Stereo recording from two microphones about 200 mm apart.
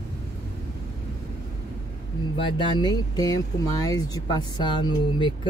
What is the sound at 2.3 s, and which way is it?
Speech, 25° left (ahead or behind).